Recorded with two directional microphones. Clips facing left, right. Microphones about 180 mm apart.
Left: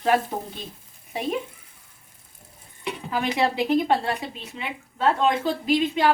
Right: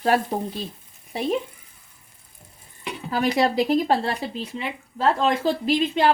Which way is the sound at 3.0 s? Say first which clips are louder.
Right 3 dB; 40° right (ahead or behind).